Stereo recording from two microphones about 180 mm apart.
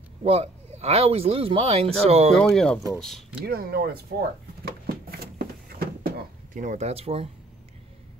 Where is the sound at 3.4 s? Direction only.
60° right (ahead or behind).